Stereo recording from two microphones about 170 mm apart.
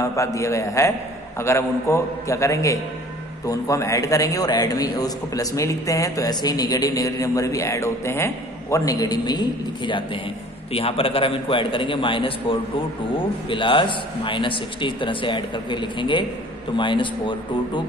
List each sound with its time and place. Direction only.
0.0 s a man's voice: 20° left (ahead or behind)